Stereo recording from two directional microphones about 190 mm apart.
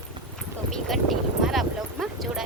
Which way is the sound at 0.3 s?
Centre (ahead or behind).